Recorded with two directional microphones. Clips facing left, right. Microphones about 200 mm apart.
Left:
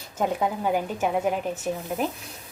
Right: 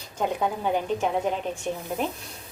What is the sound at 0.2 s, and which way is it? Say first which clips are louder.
A woman's voice: left 1 dB; 5° left (ahead or behind).